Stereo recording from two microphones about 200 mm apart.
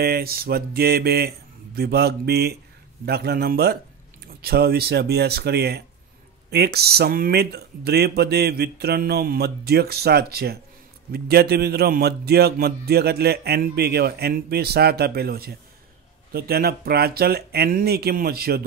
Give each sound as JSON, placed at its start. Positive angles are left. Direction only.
{"t": 0.0, "sound": "a man's voice", "side_deg": -50}